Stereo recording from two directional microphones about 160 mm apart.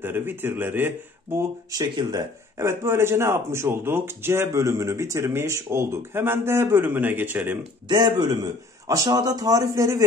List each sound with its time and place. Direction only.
0.0 s speech: 10° right (ahead or behind)
7.9 s speech: 25° right (ahead or behind)